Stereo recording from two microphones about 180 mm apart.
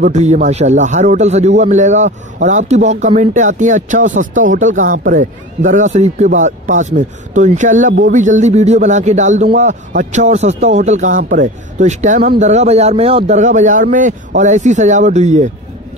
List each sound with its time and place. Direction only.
0.0 s a man's voice: 40° right (ahead or behind)
12.2 s speech: 55° right (ahead or behind)
12.4 s a man's voice: 35° right (ahead or behind)